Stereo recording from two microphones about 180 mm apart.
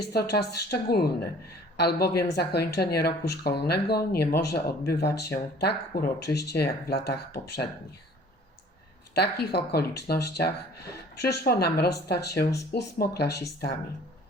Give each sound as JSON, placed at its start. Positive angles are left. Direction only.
{"t": 0.0, "sound": "speech", "side_deg": 65}
{"t": 9.1, "sound": "speech", "side_deg": 65}